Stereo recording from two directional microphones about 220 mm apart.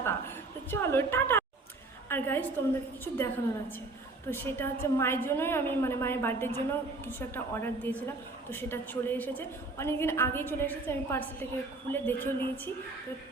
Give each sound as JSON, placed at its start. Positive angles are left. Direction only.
{"t": 0.7, "sound": "a woman's voice", "side_deg": 10}